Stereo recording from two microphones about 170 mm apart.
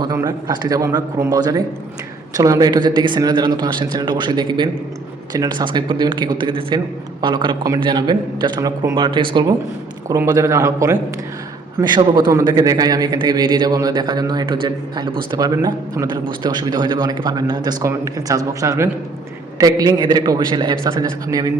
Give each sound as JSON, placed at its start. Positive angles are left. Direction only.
{"t": 0.0, "sound": "a man's voice", "side_deg": -20}